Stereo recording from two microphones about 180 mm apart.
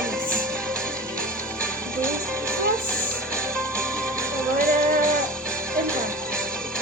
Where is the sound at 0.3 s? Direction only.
5° left (ahead or behind).